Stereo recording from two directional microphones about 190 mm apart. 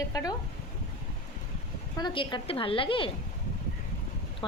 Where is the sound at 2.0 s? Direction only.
25° left (ahead or behind).